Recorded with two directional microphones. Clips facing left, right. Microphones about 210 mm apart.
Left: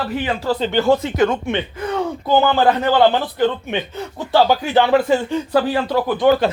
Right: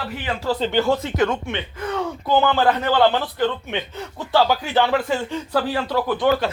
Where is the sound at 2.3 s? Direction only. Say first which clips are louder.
Left 3 dB; 10° left (ahead or behind).